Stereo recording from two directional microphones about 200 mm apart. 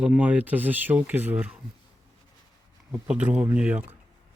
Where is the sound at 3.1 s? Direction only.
5° right (ahead or behind).